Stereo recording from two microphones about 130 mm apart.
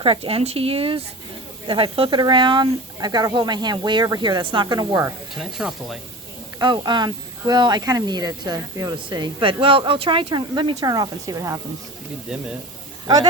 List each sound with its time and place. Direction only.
0.0 s speech: 45° right (ahead or behind)
5.4 s speech: centre (ahead or behind)
6.6 s speech: 35° right (ahead or behind)